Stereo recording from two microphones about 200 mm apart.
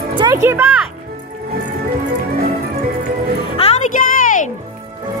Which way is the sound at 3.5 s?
35° left (ahead or behind).